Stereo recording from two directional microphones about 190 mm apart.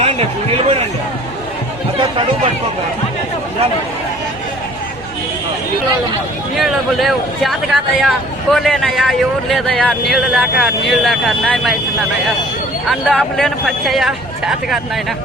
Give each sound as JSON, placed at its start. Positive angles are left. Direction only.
{"t": 0.0, "sound": "a sound", "side_deg": -30}
{"t": 6.6, "sound": "a man's voice", "side_deg": 0}
{"t": 12.9, "sound": "a man's voice", "side_deg": 5}